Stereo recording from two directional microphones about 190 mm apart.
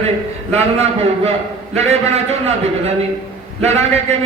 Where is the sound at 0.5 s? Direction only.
35° right (ahead or behind).